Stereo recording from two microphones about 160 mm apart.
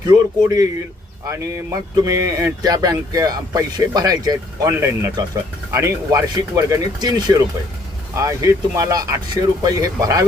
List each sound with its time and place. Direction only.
0.1 s speech: 20° right (ahead or behind)
2.0 s speech: 20° right (ahead or behind)